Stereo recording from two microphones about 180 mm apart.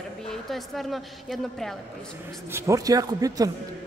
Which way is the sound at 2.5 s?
15° right (ahead or behind).